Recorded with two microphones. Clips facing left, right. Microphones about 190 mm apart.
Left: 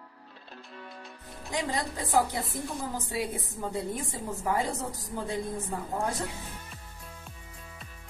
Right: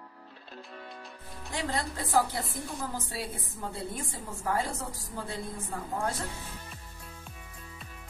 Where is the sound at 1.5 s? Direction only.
15° left (ahead or behind).